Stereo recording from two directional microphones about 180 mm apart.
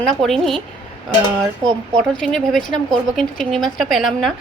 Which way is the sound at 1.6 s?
Centre (ahead or behind).